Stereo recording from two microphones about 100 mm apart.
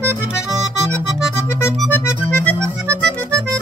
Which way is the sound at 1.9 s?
20° left (ahead or behind).